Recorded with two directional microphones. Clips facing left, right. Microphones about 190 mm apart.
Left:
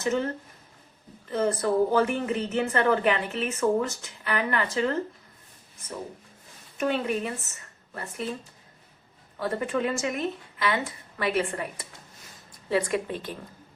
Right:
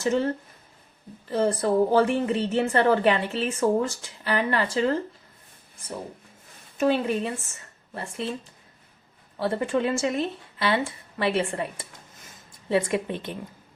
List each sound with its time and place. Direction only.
0.0 s a woman's voice: 30° right (ahead or behind)
1.3 s a woman's voice: 30° right (ahead or behind)
6.7 s a woman's voice: 30° right (ahead or behind)
9.4 s a woman's voice: 30° right (ahead or behind)